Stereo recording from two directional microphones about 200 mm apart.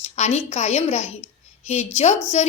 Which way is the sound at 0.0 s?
35° left (ahead or behind).